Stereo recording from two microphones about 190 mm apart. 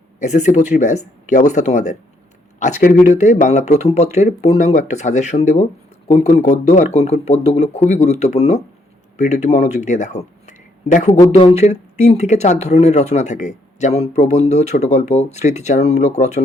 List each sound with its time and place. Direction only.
0.2 s speech: 40° left (ahead or behind)
3.1 s speech: 40° left (ahead or behind)
11.2 s speech: 20° left (ahead or behind)
11.5 s speech: 35° left (ahead or behind)